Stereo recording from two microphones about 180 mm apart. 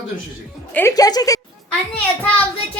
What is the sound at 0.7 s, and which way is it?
Speech, 15° left (ahead or behind).